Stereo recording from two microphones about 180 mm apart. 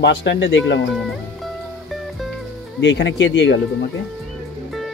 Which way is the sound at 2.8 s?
75° left (ahead or behind).